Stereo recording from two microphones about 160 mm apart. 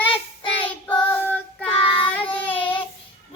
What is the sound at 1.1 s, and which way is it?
Child singing, 10° left (ahead or behind).